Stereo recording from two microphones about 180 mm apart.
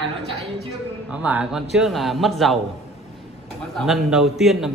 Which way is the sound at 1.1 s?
5° right (ahead or behind).